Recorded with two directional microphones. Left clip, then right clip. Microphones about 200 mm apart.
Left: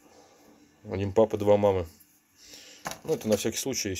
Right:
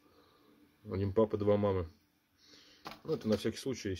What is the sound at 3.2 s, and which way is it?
Speech, 20° right (ahead or behind).